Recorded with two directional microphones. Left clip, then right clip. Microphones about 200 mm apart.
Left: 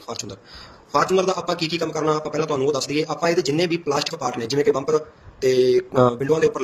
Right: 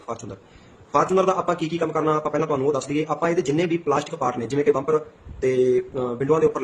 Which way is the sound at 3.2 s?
45° left (ahead or behind).